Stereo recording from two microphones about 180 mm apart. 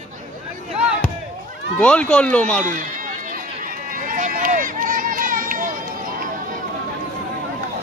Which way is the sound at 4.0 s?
50° right (ahead or behind).